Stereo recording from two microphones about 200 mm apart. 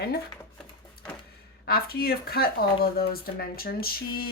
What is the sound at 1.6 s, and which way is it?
Speech, 50° left (ahead or behind).